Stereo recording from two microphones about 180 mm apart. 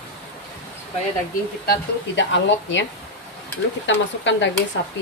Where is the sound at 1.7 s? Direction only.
85° left.